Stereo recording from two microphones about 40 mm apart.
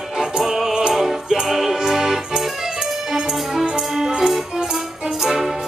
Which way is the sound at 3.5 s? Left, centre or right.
Centre.